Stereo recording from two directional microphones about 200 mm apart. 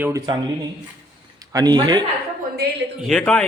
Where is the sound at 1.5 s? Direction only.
20° right (ahead or behind).